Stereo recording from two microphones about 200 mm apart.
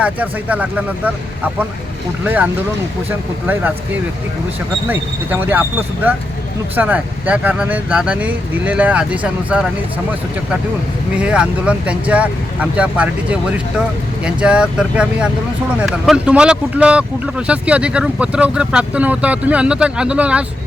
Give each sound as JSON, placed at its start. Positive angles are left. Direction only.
{"t": 0.0, "sound": "speech", "side_deg": -5}
{"t": 2.2, "sound": "speech", "side_deg": -5}
{"t": 4.9, "sound": "speech", "side_deg": -10}
{"t": 6.7, "sound": "speech", "side_deg": -10}
{"t": 11.2, "sound": "speech", "side_deg": -5}